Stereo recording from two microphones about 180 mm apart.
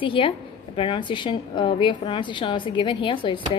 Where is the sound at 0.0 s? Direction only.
30° left (ahead or behind).